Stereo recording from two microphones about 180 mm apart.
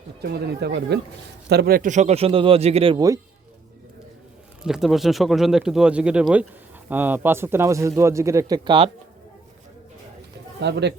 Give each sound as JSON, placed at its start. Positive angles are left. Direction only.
{"t": 0.2, "sound": "speech", "side_deg": -65}
{"t": 4.6, "sound": "speech", "side_deg": 0}
{"t": 10.6, "sound": "speech", "side_deg": -70}